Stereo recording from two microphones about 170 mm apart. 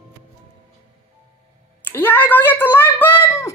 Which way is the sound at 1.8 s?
10° left (ahead or behind).